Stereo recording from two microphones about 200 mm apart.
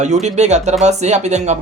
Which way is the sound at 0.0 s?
35° right (ahead or behind).